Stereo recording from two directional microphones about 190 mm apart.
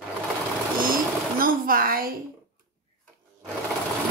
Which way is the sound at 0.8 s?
50° right (ahead or behind).